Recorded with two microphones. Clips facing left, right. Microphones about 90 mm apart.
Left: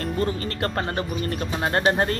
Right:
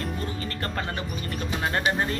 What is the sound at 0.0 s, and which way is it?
Speech, 45° left (ahead or behind).